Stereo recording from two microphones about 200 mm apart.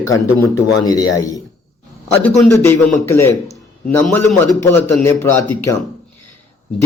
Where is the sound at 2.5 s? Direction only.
10° left (ahead or behind).